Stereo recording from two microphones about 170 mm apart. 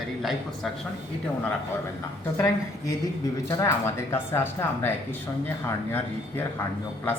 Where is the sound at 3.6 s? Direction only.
15° left (ahead or behind).